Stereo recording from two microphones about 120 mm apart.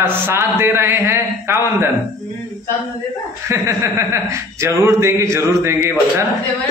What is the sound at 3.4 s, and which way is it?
A man's voice, 25° right (ahead or behind).